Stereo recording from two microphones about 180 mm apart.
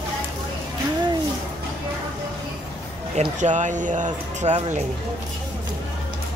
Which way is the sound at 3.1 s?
40° right (ahead or behind).